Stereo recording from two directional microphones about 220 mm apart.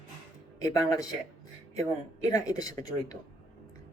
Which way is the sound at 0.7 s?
15° left (ahead or behind).